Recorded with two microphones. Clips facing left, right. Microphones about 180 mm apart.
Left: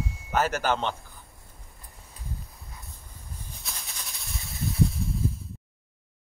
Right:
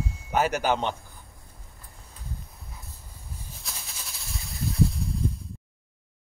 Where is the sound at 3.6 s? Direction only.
Centre (ahead or behind).